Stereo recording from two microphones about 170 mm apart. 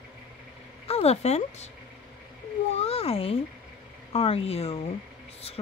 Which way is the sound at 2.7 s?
35° left (ahead or behind).